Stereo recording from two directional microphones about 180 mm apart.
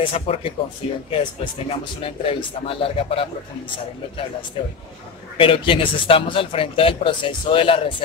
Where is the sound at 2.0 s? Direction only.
30° left (ahead or behind).